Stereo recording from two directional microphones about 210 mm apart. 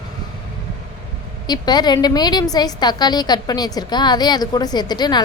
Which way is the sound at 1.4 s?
20° left (ahead or behind).